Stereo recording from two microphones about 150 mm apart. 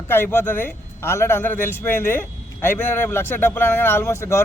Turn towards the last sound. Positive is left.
turn(degrees=20)  # may be behind; listen again after turning